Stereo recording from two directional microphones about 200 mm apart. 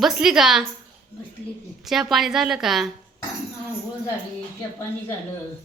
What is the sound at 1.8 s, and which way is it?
A woman's voice, centre (ahead or behind).